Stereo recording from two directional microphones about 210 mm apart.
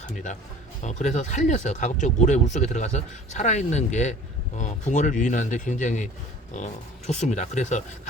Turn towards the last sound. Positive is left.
turn(degrees=35)  # may be behind; listen again after turning